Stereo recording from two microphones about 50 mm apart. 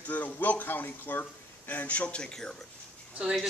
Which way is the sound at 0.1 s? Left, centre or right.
Left.